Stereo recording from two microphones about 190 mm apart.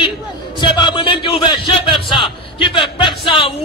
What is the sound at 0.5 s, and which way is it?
A man's voice, 25° left (ahead or behind).